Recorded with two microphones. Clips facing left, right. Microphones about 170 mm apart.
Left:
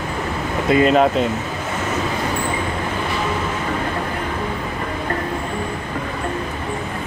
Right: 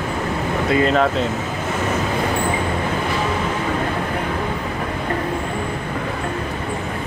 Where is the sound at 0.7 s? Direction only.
15° left (ahead or behind).